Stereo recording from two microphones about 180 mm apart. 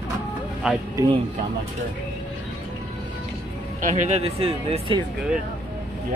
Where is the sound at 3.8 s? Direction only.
40° right (ahead or behind).